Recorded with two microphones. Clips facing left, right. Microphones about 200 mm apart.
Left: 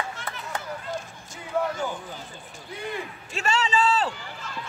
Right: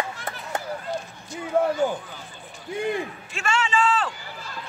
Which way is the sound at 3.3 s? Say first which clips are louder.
Even; 35° left (ahead or behind).